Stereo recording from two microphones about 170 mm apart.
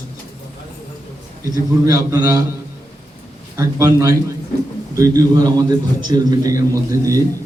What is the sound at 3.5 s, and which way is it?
A man's voice, 20° right (ahead or behind).